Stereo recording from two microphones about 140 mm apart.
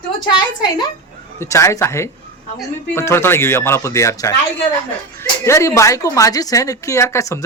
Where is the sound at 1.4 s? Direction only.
20° left (ahead or behind).